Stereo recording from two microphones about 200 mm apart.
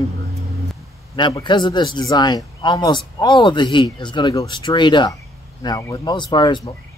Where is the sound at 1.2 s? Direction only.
20° left (ahead or behind).